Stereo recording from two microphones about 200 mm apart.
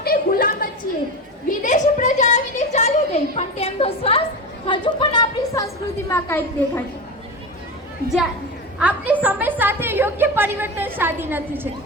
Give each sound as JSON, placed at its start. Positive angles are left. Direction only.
{"t": 0.0, "sound": "a sound", "side_deg": 50}
{"t": 4.6, "sound": "a woman's voice", "side_deg": 25}
{"t": 8.8, "sound": "a woman's voice", "side_deg": -5}